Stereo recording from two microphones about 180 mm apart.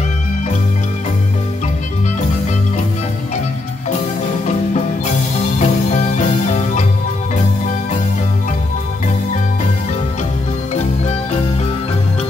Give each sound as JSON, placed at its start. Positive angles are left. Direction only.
{"t": 5.6, "sound": "music", "side_deg": 40}